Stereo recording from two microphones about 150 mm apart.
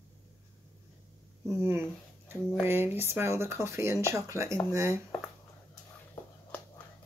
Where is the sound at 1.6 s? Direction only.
15° right (ahead or behind).